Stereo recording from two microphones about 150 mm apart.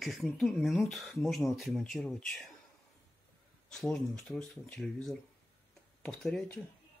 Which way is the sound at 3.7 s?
5° left (ahead or behind).